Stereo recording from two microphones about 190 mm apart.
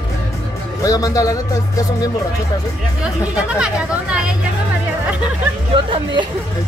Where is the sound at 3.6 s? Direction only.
5° right (ahead or behind).